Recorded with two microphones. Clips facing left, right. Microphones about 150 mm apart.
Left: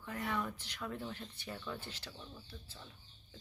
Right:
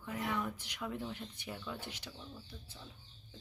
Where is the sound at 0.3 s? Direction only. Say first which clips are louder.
Even; 10° right (ahead or behind).